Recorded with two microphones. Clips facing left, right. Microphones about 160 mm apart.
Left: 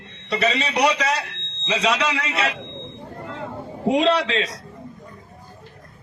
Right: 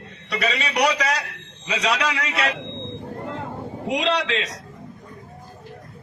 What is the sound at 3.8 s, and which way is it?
Speech, 30° left (ahead or behind).